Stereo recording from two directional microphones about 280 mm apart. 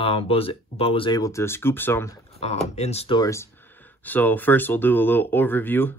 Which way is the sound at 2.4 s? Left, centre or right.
Left.